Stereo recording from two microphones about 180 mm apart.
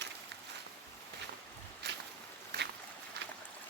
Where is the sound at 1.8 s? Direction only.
70° right (ahead or behind).